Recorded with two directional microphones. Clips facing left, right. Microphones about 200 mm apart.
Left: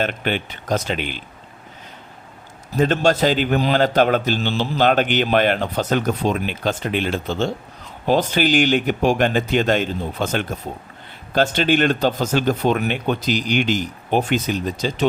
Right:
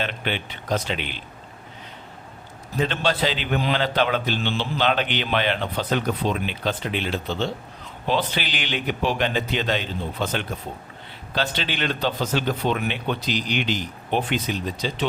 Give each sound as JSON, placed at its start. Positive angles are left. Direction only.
{"t": 0.0, "sound": "a man's voice", "side_deg": 45}
{"t": 2.7, "sound": "a man's voice", "side_deg": 45}